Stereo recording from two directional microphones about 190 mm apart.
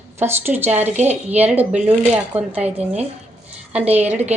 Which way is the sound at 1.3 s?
10° right (ahead or behind).